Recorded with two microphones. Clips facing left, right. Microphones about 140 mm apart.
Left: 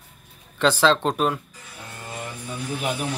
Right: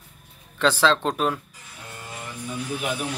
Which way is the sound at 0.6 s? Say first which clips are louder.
Left 1 dB; centre (ahead or behind).